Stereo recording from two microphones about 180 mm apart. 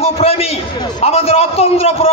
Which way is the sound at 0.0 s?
35° left (ahead or behind).